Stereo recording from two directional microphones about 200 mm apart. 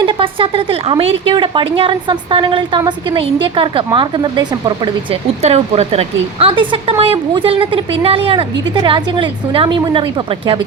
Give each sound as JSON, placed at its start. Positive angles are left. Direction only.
{"t": 0.0, "sound": "speech", "side_deg": -25}
{"t": 5.4, "sound": "speech", "side_deg": -30}